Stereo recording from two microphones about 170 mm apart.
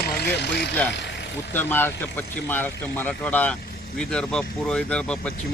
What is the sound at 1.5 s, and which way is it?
Speech, 10° left (ahead or behind).